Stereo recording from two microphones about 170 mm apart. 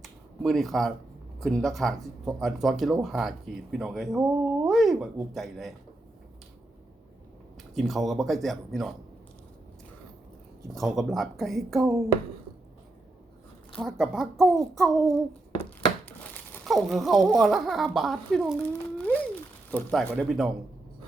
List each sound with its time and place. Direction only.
0.0 s a sound: centre (ahead or behind)
1.4 s speech: centre (ahead or behind)
7.8 s speech: centre (ahead or behind)
10.8 s speech: centre (ahead or behind)
11.8 s speech: 20° right (ahead or behind)
14.0 s speech: centre (ahead or behind)
16.6 s speech: centre (ahead or behind)